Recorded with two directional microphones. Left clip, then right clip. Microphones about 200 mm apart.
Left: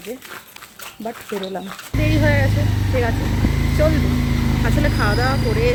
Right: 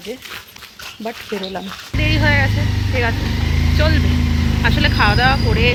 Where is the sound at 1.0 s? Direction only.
5° right (ahead or behind).